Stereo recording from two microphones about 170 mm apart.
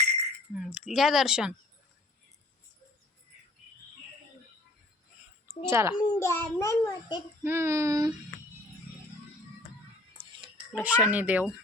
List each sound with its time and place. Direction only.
0.5 s speech: 5° right (ahead or behind)
5.6 s a child's voice: 15° right (ahead or behind)
5.9 s a child's voice: 15° left (ahead or behind)
7.4 s a child's voice: 15° right (ahead or behind)
10.7 s a child's voice: 5° right (ahead or behind)